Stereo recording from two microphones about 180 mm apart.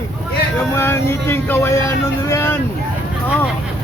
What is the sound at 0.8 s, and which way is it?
Speech, 15° left (ahead or behind).